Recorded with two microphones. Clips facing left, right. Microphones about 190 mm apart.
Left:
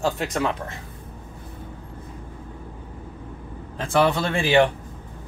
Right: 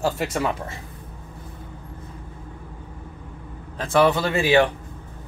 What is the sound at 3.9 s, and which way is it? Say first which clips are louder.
Speech: right 2 dB; centre (ahead or behind).